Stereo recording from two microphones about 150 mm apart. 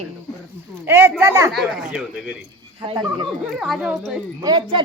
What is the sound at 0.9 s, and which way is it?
Speech, 15° right (ahead or behind).